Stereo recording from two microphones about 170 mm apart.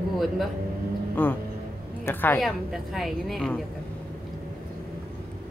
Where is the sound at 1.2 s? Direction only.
10° left (ahead or behind).